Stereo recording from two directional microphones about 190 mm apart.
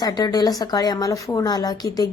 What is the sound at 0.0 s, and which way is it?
A woman's voice, 20° left (ahead or behind).